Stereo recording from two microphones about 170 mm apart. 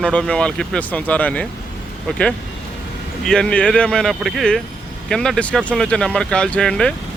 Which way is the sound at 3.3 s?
5° left (ahead or behind).